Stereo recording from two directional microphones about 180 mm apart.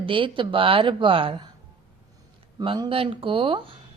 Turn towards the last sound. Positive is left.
turn(degrees=-30)  # may be behind; listen again after turning